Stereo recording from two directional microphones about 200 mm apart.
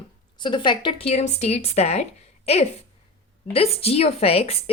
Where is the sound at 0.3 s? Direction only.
25° left (ahead or behind).